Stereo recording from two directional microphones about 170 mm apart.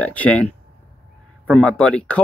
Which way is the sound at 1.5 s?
5° left (ahead or behind).